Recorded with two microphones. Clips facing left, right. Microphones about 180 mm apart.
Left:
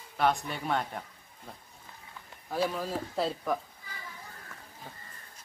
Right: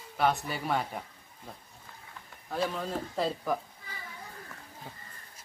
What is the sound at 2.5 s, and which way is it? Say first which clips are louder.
Speech: left 1 dB; 5° left (ahead or behind).